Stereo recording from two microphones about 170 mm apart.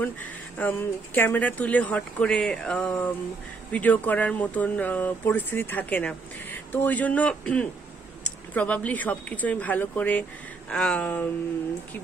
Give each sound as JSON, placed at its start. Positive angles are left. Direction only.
{"t": 0.0, "sound": "speech", "side_deg": 10}